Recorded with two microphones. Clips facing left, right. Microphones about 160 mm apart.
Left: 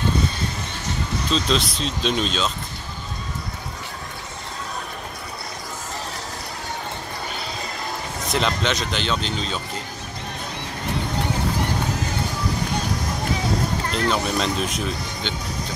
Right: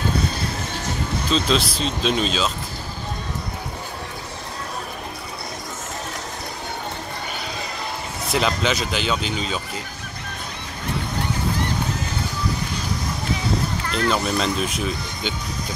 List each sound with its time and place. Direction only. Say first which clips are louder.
1.3 s speech: right 2 dB; centre (ahead or behind)
8.3 s speech: right 1 dB; 5° right (ahead or behind)
13.8 s speech: right 2 dB; 35° left (ahead or behind)
14.1 s speech: right 1 dB; centre (ahead or behind)